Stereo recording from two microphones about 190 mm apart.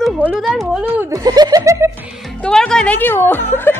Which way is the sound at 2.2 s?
5° left (ahead or behind).